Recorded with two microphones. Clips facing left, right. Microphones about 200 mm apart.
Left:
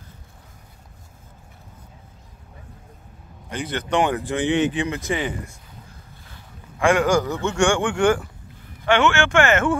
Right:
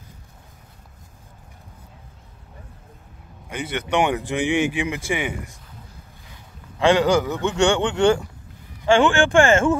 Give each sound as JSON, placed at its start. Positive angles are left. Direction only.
{"t": 3.4, "sound": "speech", "side_deg": -10}
{"t": 6.8, "sound": "speech", "side_deg": -20}